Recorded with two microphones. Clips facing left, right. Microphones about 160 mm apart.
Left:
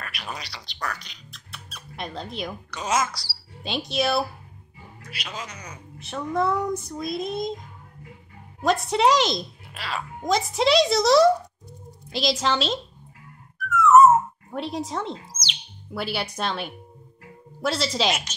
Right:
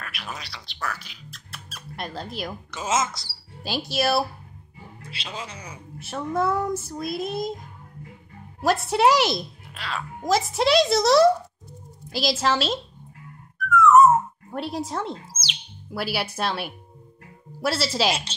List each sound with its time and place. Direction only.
0.0 s speech: centre (ahead or behind)
2.9 s a man's voice: 20° right (ahead or behind)
3.6 s a woman's voice: 5° right (ahead or behind)
5.0 s a man's voice: 30° right (ahead or behind)
5.6 s a woman's voice: 5° right (ahead or behind)
8.5 s a woman's voice: 5° right (ahead or behind)
13.6 s a sound: centre (ahead or behind)
14.5 s a woman's voice: centre (ahead or behind)